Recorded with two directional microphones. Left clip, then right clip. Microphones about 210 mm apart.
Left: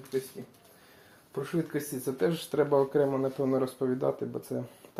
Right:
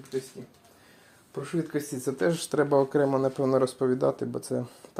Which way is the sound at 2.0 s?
45° right (ahead or behind).